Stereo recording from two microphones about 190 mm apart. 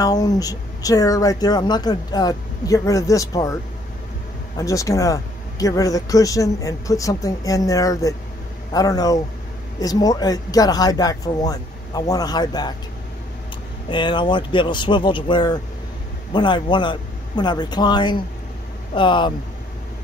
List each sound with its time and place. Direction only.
0.0 s speech: 20° left (ahead or behind)
4.6 s speech: 15° left (ahead or behind)
13.8 s speech: 25° left (ahead or behind)